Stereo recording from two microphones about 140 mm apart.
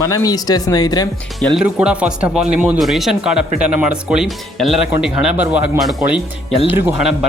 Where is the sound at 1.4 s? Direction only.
Centre (ahead or behind).